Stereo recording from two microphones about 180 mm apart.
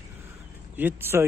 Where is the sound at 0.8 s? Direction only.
10° right (ahead or behind).